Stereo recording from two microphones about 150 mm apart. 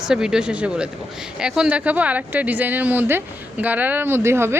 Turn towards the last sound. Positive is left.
turn(degrees=-15)  # may be behind; listen again after turning